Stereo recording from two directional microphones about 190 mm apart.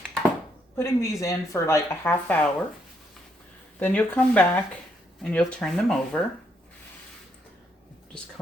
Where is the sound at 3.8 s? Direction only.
10° left (ahead or behind).